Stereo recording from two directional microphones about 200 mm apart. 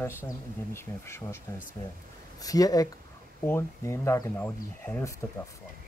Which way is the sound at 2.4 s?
20° left (ahead or behind).